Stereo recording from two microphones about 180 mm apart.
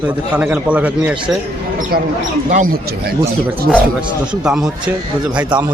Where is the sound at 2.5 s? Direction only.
45° right (ahead or behind).